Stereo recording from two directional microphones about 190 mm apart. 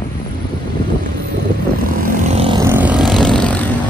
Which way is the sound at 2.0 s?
45° right (ahead or behind).